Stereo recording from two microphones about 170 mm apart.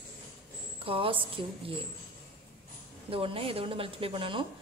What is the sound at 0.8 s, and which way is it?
Speech, 30° right (ahead or behind).